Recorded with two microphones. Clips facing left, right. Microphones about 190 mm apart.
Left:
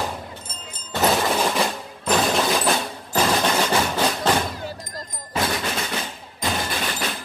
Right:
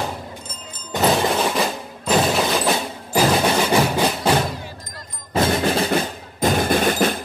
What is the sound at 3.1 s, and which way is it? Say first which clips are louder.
Music: right 3 dB; 10° right (ahead or behind).